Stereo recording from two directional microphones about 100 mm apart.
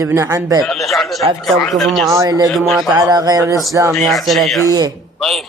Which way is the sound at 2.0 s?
35° right (ahead or behind).